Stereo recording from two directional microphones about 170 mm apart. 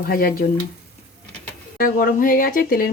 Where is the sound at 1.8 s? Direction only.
55° left (ahead or behind).